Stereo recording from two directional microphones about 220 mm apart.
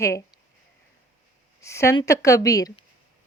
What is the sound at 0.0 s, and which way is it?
Speech, 15° left (ahead or behind).